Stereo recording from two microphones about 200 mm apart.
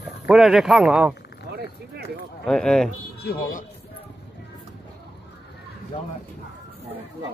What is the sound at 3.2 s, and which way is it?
Speech, 50° left (ahead or behind).